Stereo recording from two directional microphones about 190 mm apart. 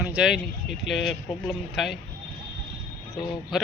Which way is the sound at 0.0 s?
5° right (ahead or behind).